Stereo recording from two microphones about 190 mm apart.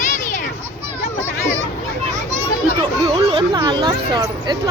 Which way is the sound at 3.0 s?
25° right (ahead or behind).